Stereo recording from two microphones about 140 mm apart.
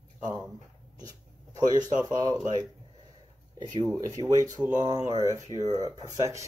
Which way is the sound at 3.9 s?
25° right (ahead or behind).